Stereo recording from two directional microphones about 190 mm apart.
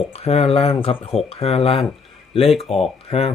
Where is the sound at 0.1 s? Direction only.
35° left (ahead or behind).